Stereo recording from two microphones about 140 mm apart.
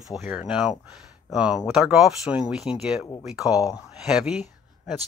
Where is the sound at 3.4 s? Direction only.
25° left (ahead or behind).